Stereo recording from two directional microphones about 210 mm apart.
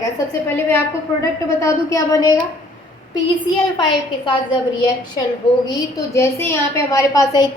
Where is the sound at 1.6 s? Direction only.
15° left (ahead or behind).